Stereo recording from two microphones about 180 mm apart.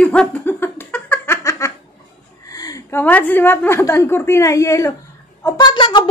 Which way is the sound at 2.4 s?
20° left (ahead or behind).